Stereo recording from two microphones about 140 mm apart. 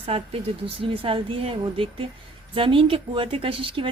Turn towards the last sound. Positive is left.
turn(degrees=-40)  # may be behind; listen again after turning